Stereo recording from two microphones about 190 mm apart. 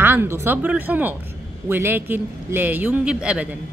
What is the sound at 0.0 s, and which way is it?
A man's voice, 10° right (ahead or behind).